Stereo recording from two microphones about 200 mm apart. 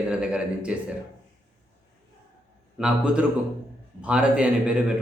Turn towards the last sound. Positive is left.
turn(degrees=-5)  # may be behind; listen again after turning